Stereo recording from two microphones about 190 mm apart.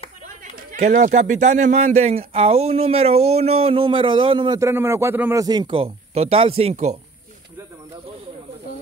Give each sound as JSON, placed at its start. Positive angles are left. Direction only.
{"t": 0.4, "sound": "speech", "side_deg": -40}
{"t": 4.6, "sound": "a man's voice", "side_deg": -15}